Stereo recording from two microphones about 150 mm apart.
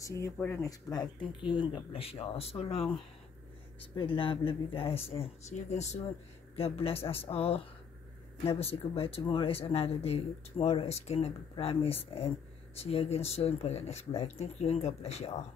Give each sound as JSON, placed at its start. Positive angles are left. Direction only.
{"t": 0.0, "sound": "speech", "side_deg": 20}
{"t": 3.9, "sound": "speech", "side_deg": 35}
{"t": 6.5, "sound": "speech", "side_deg": 40}